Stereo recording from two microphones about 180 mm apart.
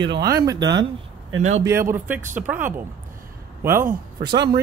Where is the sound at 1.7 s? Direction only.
15° right (ahead or behind).